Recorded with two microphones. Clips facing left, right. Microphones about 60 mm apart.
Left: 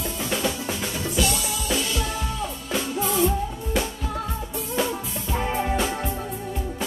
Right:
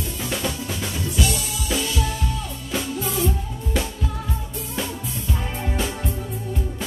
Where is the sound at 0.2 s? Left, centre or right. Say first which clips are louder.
Left 1 dB; centre.